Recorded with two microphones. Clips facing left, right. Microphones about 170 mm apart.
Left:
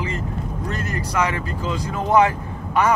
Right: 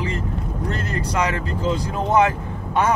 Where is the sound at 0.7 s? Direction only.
30° right (ahead or behind).